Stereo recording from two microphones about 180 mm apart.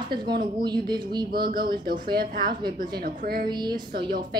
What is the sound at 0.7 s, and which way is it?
Speech, 25° right (ahead or behind).